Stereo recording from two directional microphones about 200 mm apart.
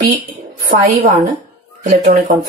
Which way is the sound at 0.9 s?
40° right (ahead or behind).